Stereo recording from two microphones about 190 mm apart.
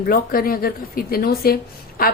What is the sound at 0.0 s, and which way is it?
A woman's voice, 50° left (ahead or behind).